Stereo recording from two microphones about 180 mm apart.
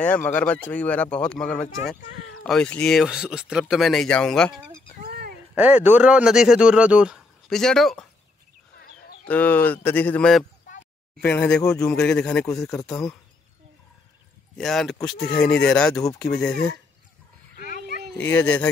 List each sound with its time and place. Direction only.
0.0 s speech: 10° left (ahead or behind)
5.5 s speech: 10° right (ahead or behind)
9.2 s speech: 10° left (ahead or behind)
11.6 s speech: 20° left (ahead or behind)
12.0 s speech: 5° left (ahead or behind)
14.6 s speech: centre (ahead or behind)
17.6 s pig: 50° left (ahead or behind)
18.1 s speech: 10° left (ahead or behind)